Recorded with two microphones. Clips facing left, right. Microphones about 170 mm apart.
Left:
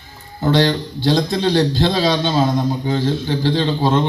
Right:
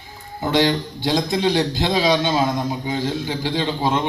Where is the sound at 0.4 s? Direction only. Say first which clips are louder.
Left 2 dB; 15° right (ahead or behind).